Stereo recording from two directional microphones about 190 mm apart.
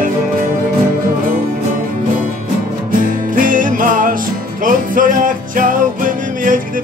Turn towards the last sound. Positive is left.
turn(degrees=-45)  # may be behind; listen again after turning